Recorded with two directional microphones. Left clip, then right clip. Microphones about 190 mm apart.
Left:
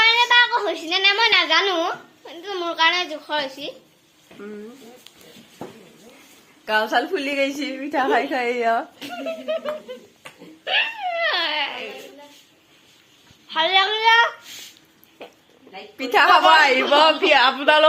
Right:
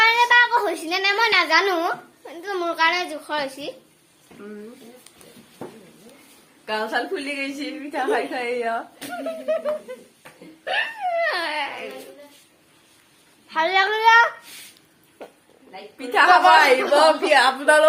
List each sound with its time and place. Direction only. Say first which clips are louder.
0.0 s a woman's voice: even; 10° right (ahead or behind)
6.7 s a woman's voice: left 4 dB; 65° left (ahead or behind)
9.0 s a child's voice: even; 15° right (ahead or behind)
10.6 s speech: left 2 dB; 5° right (ahead or behind)
13.5 s a child's voice: left 1 dB; 10° right (ahead or behind)
15.2 s a sound: even; 10° right (ahead or behind)
16.0 s a woman's voice: even; 55° left (ahead or behind)
16.9 s a sound: left 1 dB; 25° left (ahead or behind)